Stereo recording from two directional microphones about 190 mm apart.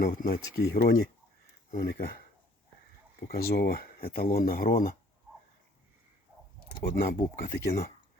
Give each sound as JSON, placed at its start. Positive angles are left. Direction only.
{"t": 0.0, "sound": "speech", "side_deg": 50}
{"t": 3.2, "sound": "speech", "side_deg": 50}
{"t": 7.2, "sound": "speech", "side_deg": 45}